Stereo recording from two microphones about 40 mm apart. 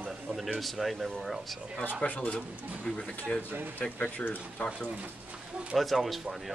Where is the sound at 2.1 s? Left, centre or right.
Left.